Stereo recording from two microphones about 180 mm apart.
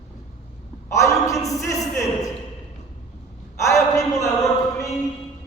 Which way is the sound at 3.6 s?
15° left (ahead or behind).